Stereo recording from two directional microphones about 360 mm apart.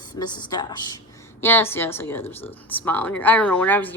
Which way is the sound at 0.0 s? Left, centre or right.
Centre.